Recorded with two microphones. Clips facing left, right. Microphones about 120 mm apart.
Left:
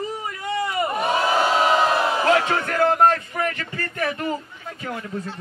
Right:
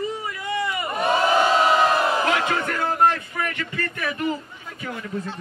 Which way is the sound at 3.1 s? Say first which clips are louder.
Left 2 dB; 35° left (ahead or behind).